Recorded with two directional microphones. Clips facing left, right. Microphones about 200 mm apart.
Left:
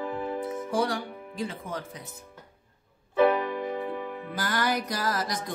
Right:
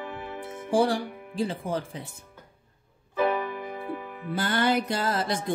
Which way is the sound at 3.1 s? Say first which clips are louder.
Left 4 dB; 5° right (ahead or behind).